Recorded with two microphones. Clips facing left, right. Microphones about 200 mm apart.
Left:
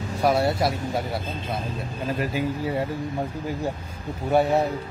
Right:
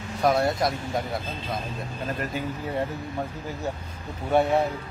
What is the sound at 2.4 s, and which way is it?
Speech, 10° left (ahead or behind).